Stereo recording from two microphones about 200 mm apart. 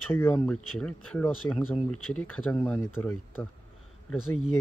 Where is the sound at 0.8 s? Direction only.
5° left (ahead or behind).